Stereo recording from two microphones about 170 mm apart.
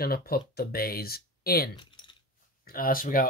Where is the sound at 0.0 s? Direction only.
60° left (ahead or behind).